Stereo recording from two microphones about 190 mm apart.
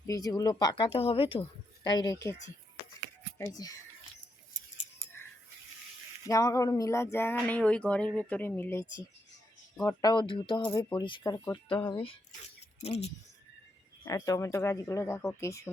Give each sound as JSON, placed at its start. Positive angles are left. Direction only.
{"t": 0.0, "sound": "speech", "side_deg": 20}
{"t": 6.2, "sound": "speech", "side_deg": 15}
{"t": 14.0, "sound": "speech", "side_deg": 15}